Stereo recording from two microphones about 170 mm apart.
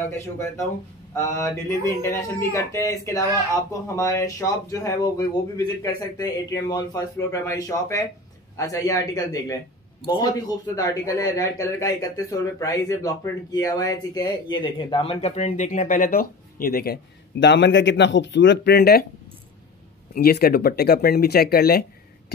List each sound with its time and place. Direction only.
0.0 s speech: 15° left (ahead or behind); by 19.0 s 65° left (ahead or behind)
20.2 s speech: 65° left (ahead or behind)